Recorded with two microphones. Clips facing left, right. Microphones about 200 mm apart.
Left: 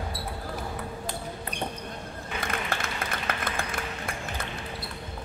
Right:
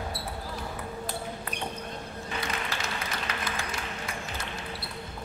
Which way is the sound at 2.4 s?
55° left (ahead or behind).